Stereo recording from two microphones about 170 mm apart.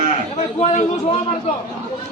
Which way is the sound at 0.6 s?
40° left (ahead or behind).